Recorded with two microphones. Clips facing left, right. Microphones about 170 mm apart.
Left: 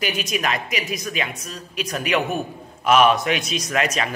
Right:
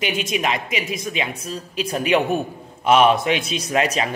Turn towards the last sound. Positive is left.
turn(degrees=-30)  # may be behind; listen again after turning